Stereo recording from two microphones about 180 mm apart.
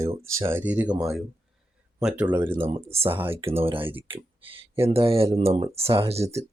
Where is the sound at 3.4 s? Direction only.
30° right (ahead or behind).